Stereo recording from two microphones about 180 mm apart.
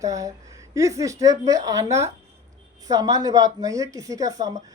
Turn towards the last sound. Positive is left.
turn(degrees=-20)  # may be behind; listen again after turning